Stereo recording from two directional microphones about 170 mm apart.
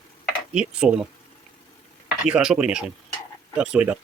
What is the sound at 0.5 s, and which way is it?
Speech, 5° right (ahead or behind).